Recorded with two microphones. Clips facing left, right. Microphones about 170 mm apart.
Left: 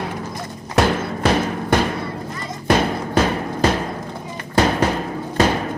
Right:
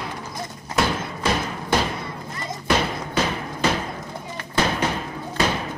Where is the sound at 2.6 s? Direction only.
50° left (ahead or behind).